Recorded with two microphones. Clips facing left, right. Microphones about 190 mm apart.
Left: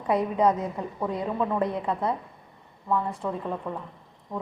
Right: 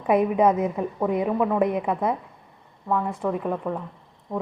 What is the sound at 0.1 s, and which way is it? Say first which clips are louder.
A woman's voice: right 4 dB; 20° right (ahead or behind).